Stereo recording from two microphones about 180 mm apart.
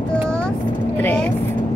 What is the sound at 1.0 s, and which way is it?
Speech, 10° left (ahead or behind).